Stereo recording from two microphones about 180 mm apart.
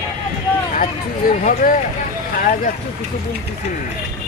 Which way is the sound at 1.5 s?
50° left (ahead or behind).